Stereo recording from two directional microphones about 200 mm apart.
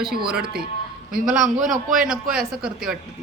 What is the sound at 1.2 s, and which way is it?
Speech, 5° right (ahead or behind).